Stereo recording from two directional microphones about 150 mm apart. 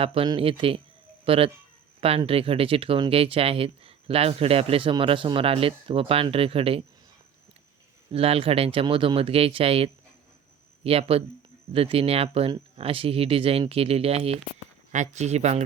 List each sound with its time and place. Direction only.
0.0 s speech: 40° right (ahead or behind)
8.1 s speech: 40° right (ahead or behind)